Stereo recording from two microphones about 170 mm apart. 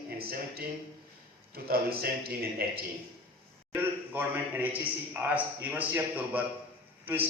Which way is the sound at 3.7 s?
10° right (ahead or behind).